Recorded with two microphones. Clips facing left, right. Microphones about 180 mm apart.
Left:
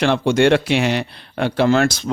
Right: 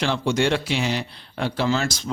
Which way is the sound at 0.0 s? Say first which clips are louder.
Left 7 dB; 60° left (ahead or behind).